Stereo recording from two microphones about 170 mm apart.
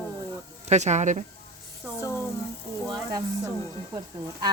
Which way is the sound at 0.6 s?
45° right (ahead or behind).